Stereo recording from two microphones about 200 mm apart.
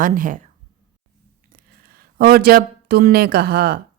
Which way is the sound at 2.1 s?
50° right (ahead or behind).